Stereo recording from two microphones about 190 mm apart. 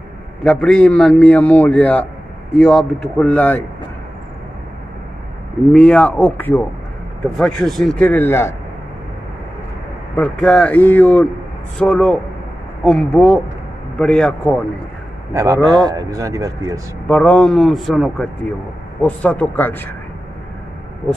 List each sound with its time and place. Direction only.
0.4 s a man's voice: 5° left (ahead or behind)
5.7 s a man's voice: 5° left (ahead or behind)
10.1 s a man's voice: 5° left (ahead or behind)
15.3 s speech: 15° right (ahead or behind)
17.1 s a man's voice: 5° left (ahead or behind)